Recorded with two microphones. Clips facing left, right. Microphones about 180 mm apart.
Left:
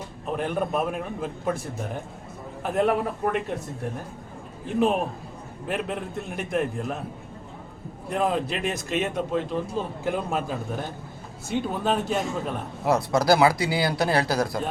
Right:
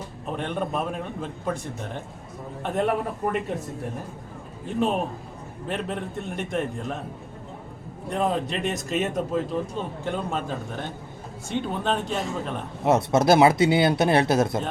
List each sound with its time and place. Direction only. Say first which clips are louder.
0.3 s speech: left 2 dB; 5° left (ahead or behind)
5.6 s speech: left 1 dB; 5° left (ahead or behind)
8.1 s speech: even; 5° left (ahead or behind)
12.8 s speech: right 3 dB; 25° right (ahead or behind)